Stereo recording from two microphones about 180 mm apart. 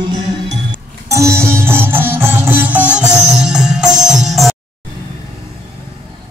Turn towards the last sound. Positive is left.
turn(degrees=0)  # may be behind; listen again after turning